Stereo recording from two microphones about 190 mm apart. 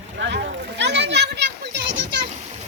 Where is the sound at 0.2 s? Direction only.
65° right (ahead or behind).